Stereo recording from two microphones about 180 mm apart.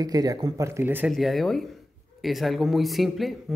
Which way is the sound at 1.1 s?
Centre (ahead or behind).